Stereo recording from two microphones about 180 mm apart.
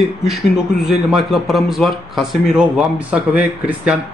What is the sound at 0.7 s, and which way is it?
Speech, 60° left (ahead or behind).